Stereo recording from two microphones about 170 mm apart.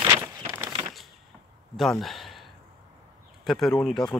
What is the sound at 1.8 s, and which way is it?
Speech, centre (ahead or behind).